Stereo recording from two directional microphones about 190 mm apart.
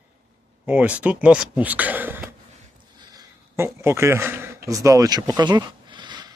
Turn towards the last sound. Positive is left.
turn(degrees=-20)  # may be behind; listen again after turning